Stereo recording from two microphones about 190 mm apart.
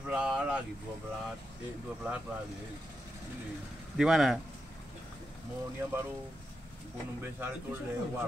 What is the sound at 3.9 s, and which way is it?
Speech, centre (ahead or behind).